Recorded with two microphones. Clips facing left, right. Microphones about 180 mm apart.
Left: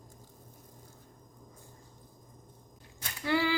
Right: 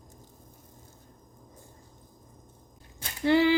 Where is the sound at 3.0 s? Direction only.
25° right (ahead or behind).